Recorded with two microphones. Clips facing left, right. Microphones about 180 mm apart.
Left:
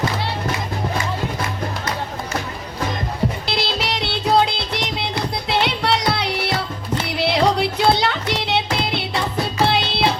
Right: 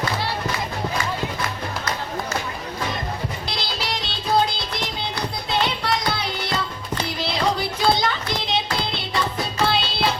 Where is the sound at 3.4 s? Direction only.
70° left (ahead or behind).